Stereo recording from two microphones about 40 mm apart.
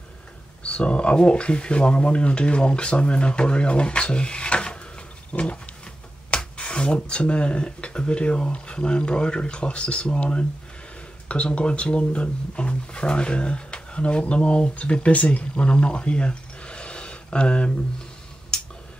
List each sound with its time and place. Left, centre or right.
0.7 s speech: left